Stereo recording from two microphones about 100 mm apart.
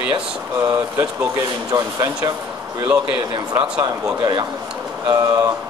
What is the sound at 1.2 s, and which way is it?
Speech, 35° right (ahead or behind).